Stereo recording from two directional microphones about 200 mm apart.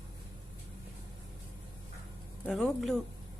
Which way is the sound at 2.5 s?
Centre (ahead or behind).